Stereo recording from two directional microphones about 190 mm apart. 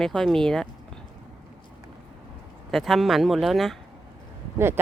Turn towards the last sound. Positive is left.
turn(degrees=-15)  # may be behind; listen again after turning